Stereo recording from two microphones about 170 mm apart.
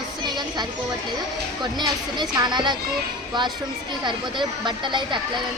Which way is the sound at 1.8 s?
25° right (ahead or behind).